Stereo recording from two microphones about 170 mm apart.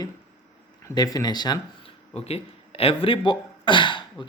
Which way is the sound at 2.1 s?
35° left (ahead or behind).